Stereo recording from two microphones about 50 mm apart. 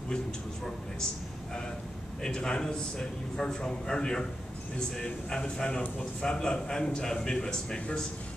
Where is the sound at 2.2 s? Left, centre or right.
Centre.